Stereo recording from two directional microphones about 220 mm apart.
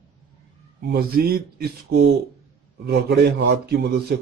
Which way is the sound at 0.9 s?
45° right (ahead or behind).